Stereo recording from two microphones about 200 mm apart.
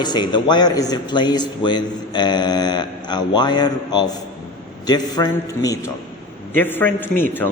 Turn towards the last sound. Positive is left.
turn(degrees=10)  # may be behind; listen again after turning